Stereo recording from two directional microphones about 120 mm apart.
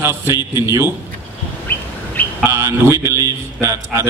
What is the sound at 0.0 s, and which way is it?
Speech, 20° right (ahead or behind).